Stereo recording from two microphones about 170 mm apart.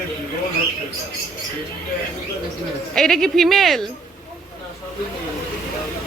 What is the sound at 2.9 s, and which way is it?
Speech, 5° left (ahead or behind).